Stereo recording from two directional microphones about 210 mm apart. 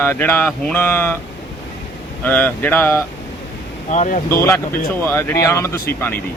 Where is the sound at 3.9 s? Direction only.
35° left (ahead or behind).